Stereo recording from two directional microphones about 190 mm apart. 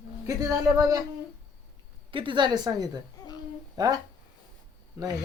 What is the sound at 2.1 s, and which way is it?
A woman's voice, 25° right (ahead or behind).